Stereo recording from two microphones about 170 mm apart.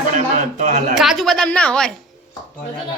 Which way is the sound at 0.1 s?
45° right (ahead or behind).